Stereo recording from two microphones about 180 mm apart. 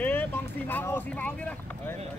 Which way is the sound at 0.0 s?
10° left (ahead or behind).